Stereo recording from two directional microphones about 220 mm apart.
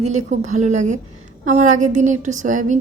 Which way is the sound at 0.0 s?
30° right (ahead or behind).